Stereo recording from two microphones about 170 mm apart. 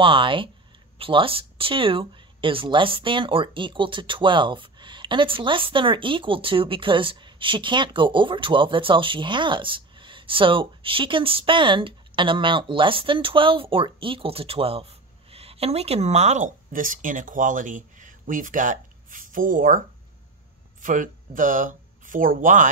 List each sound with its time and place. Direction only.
0.0 s speech: 30° right (ahead or behind); by 19.8 s 55° right (ahead or behind)
20.8 s speech: 50° right (ahead or behind)